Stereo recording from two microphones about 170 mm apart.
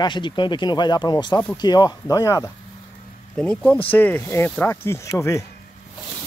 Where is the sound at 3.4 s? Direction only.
5° left (ahead or behind).